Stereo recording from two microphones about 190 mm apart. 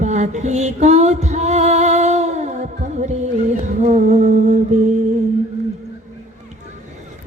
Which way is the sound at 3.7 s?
40° right (ahead or behind).